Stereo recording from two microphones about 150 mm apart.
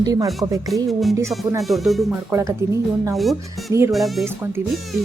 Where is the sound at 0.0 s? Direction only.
25° right (ahead or behind).